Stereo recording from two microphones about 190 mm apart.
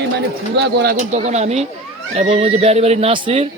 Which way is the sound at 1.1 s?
35° right (ahead or behind).